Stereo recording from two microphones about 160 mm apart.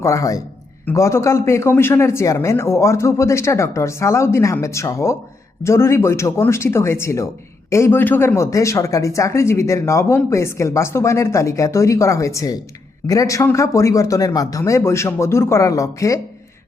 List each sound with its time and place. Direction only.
0.0 s speech: 20° left (ahead or behind)